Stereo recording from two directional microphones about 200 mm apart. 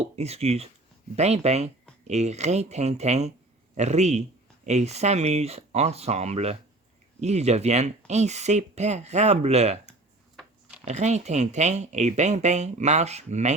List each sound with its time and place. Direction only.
0.0 s speech: 30° right (ahead or behind)
10.3 s a sound: 5° right (ahead or behind)
10.8 s speech: 35° right (ahead or behind)